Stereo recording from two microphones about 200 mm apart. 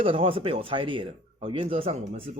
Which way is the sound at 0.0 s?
30° right (ahead or behind).